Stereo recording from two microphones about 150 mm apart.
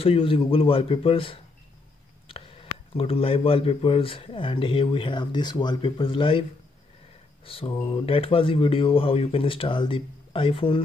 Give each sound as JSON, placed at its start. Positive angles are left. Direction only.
{"t": 0.0, "sound": "a man's voice", "side_deg": 35}
{"t": 7.4, "sound": "a man's voice", "side_deg": 40}